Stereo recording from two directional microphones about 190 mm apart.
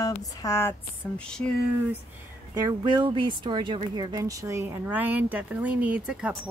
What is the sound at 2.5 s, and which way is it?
Speech, 20° right (ahead or behind).